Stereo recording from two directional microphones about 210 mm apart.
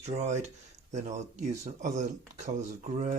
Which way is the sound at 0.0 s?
30° right (ahead or behind).